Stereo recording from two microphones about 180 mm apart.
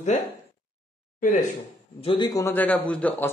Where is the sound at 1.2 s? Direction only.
45° left (ahead or behind).